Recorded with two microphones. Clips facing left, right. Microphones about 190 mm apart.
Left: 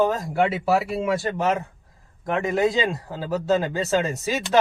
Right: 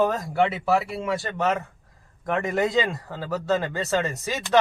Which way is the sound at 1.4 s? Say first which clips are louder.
Left 1 dB; 20° left (ahead or behind).